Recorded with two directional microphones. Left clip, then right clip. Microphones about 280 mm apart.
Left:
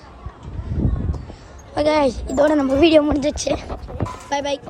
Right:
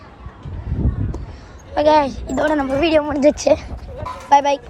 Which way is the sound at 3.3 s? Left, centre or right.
Centre.